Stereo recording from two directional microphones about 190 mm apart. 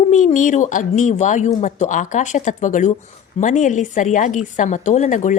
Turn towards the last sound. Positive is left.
turn(degrees=40)  # may be behind; listen again after turning